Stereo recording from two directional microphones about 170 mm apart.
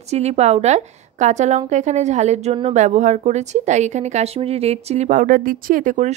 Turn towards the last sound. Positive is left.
turn(degrees=-50)  # may be behind; listen again after turning